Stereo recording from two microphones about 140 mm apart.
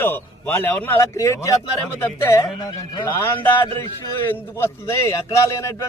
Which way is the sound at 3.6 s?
20° left (ahead or behind).